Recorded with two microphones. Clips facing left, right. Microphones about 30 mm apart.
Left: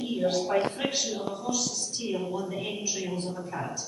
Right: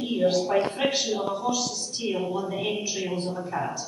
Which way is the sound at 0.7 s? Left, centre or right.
Right.